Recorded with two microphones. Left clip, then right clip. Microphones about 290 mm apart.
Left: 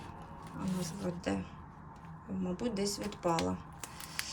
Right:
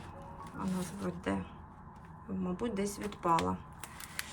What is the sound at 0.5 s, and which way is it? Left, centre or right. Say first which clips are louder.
Speech: even; centre.